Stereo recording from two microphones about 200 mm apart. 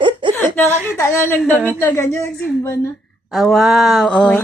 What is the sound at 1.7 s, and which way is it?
Speech, 15° left (ahead or behind).